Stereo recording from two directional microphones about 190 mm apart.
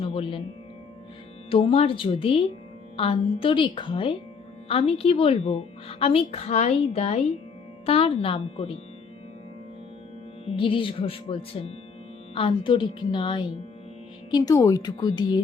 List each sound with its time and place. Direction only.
0.0 s speech: 30° left (ahead or behind)
1.5 s music: 30° left (ahead or behind)
4.7 s a woman's voice: 30° left (ahead or behind)
7.9 s music: 30° left (ahead or behind)
10.4 s music: 25° left (ahead or behind)